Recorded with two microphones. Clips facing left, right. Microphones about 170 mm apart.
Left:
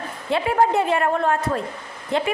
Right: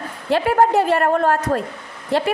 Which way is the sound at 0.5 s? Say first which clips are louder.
Right 2 dB; 40° right (ahead or behind).